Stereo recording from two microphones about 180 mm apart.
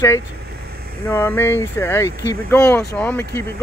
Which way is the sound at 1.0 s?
10° left (ahead or behind).